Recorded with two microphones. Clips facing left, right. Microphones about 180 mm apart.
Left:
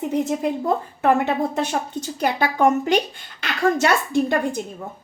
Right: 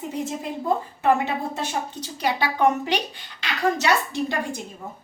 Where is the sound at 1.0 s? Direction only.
55° left (ahead or behind).